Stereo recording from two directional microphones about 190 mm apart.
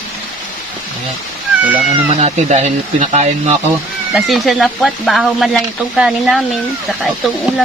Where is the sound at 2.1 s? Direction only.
35° right (ahead or behind).